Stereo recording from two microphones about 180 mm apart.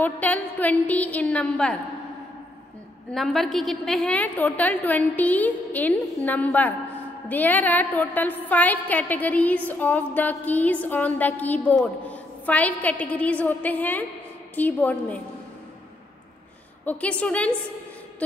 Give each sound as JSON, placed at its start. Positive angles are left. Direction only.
{"t": 0.0, "sound": "a woman's voice", "side_deg": 10}
{"t": 3.1, "sound": "a woman's voice", "side_deg": 0}
{"t": 16.8, "sound": "a woman's voice", "side_deg": 10}